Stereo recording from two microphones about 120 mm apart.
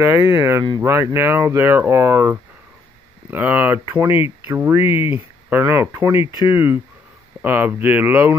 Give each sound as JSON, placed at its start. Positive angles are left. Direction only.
{"t": 0.0, "sound": "speech", "side_deg": -25}
{"t": 4.8, "sound": "speech", "side_deg": 50}
{"t": 5.1, "sound": "speech", "side_deg": -20}